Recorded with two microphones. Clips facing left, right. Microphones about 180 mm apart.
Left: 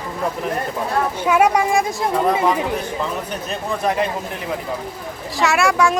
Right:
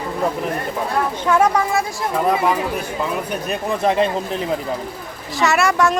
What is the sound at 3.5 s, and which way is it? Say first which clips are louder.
Speech: right 2 dB; 20° right (ahead or behind).